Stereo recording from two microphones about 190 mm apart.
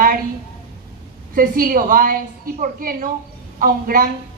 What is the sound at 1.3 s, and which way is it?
A woman's voice, 50° right (ahead or behind).